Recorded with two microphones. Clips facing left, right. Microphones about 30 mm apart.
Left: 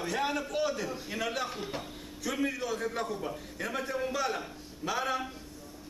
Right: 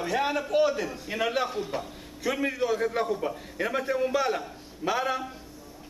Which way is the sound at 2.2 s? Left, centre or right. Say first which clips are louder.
Right 5 dB; centre.